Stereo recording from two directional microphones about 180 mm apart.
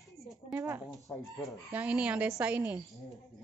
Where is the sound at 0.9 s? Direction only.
20° left (ahead or behind).